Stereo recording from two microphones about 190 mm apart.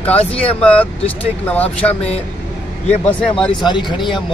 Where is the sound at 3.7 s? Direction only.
25° left (ahead or behind).